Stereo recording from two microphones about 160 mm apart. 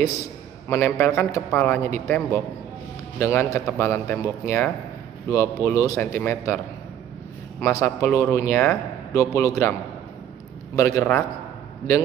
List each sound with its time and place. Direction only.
0.7 s a man's voice: 15° left (ahead or behind)
7.6 s a man's voice: 15° left (ahead or behind)
10.8 s a man's voice: 15° left (ahead or behind)